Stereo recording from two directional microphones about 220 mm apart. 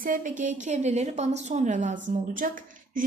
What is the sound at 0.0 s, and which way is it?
A woman's voice, 35° right (ahead or behind).